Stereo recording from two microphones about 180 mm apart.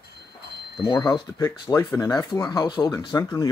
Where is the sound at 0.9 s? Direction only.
20° left (ahead or behind).